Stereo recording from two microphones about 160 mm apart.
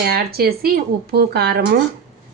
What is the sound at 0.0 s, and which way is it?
Speech, 75° right (ahead or behind).